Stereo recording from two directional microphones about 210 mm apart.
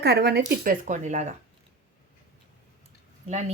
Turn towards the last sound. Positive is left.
turn(degrees=-30)  # may be behind; listen again after turning